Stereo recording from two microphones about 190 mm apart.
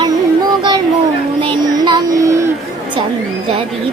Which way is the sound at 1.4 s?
25° right (ahead or behind).